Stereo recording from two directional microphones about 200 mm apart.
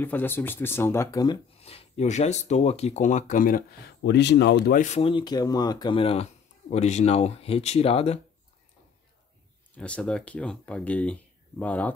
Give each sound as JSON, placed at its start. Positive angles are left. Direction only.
{"t": 0.0, "sound": "speech", "side_deg": 10}
{"t": 4.0, "sound": "speech", "side_deg": 60}
{"t": 4.7, "sound": "speech", "side_deg": 35}
{"t": 9.8, "sound": "speech", "side_deg": 5}